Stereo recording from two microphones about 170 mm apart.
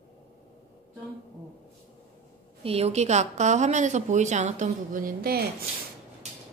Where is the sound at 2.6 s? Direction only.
35° right (ahead or behind); by 5.4 s 60° right (ahead or behind).